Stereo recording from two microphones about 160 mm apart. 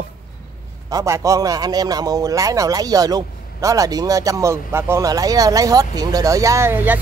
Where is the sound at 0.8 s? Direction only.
20° right (ahead or behind).